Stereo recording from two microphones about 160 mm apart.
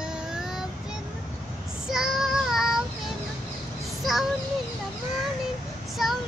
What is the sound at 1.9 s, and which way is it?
Child singing, centre (ahead or behind).